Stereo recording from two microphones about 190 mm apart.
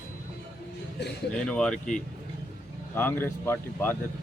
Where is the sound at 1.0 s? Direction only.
60° left (ahead or behind).